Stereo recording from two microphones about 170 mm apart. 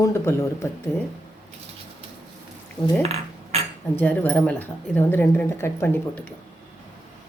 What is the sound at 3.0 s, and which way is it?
Cutlery, 35° right (ahead or behind).